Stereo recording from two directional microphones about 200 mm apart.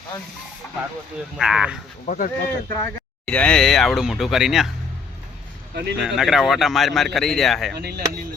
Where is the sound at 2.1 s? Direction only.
45° left (ahead or behind).